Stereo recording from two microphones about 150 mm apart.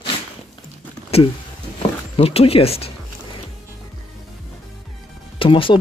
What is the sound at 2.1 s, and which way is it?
Speech, 40° left (ahead or behind).